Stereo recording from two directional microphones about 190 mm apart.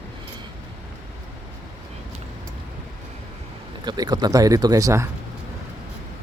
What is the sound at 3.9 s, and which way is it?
Speech, 20° right (ahead or behind).